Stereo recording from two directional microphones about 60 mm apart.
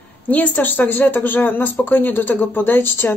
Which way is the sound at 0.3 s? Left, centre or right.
Left.